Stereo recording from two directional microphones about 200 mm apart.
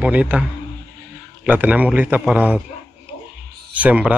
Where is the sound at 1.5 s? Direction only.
10° right (ahead or behind).